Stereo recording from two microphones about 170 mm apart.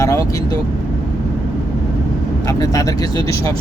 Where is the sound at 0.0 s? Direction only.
20° left (ahead or behind).